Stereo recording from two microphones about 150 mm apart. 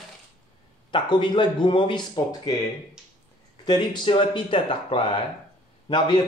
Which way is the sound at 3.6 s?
30° left (ahead or behind).